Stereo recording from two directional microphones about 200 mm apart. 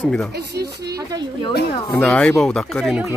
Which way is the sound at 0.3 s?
55° right (ahead or behind).